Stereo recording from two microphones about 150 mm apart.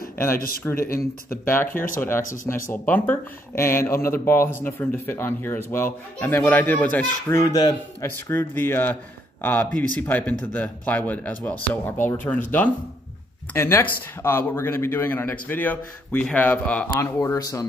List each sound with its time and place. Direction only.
0.7 s speech: 75° left (ahead or behind)
1.4 s speech: 15° left (ahead or behind)
8.3 s speech: 15° left (ahead or behind)